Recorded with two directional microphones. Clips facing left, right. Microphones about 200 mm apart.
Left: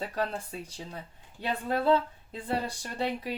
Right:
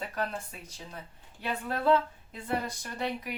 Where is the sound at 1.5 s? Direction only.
30° left (ahead or behind).